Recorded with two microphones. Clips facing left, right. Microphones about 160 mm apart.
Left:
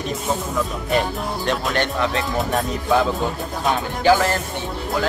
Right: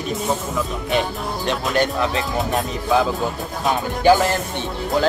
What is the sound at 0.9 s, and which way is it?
Music, centre (ahead or behind).